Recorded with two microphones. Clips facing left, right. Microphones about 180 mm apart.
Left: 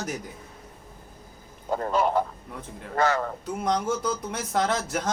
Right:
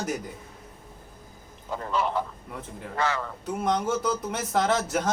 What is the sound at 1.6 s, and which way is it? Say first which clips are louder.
A man's voice: left 4 dB; 45° left (ahead or behind).